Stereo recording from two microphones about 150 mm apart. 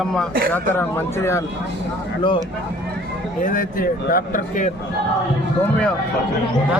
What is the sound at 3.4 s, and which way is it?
Speech, 65° left (ahead or behind).